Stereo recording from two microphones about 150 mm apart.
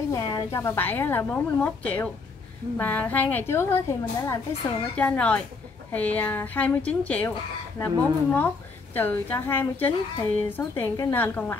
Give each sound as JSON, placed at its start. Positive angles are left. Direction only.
{"t": 0.1, "sound": "a woman's voice", "side_deg": 25}